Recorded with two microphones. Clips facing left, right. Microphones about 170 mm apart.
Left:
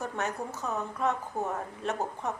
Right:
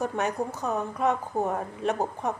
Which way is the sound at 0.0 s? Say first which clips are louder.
Right 6 dB; 15° right (ahead or behind).